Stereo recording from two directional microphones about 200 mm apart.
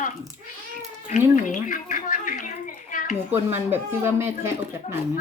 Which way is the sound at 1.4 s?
40° left (ahead or behind).